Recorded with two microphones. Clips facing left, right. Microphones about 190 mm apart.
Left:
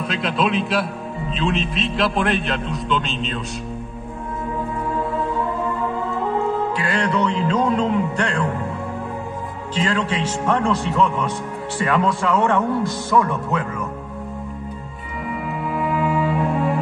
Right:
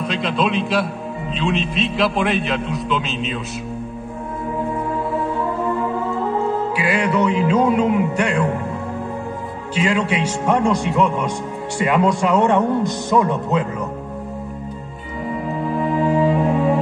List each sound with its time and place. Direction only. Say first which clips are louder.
0.1 s a man's voice: even; centre (ahead or behind)
6.8 s speech: right 5 dB; 10° right (ahead or behind)
9.8 s speech: right 3 dB; 10° right (ahead or behind)
16.0 s music: right 5 dB; 35° right (ahead or behind)